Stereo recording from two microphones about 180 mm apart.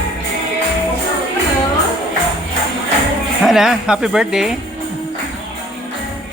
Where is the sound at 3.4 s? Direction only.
5° right (ahead or behind).